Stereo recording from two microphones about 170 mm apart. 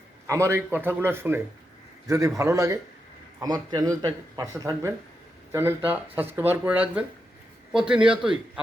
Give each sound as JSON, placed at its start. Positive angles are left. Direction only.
{"t": 0.3, "sound": "a man's voice", "side_deg": -15}